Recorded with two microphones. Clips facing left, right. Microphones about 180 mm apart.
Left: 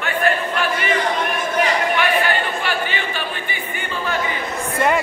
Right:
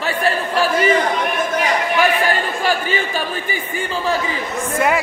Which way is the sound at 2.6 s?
40° right (ahead or behind).